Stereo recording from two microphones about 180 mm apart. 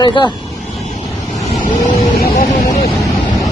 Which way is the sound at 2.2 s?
55° left (ahead or behind).